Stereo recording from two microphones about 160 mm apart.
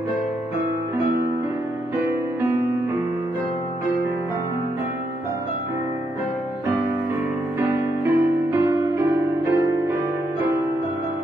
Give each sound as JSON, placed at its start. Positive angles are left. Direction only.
{"t": 7.6, "sound": "music", "side_deg": -15}